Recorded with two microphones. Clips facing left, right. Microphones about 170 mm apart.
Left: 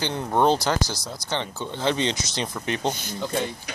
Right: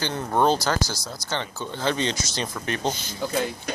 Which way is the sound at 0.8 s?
60° left (ahead or behind).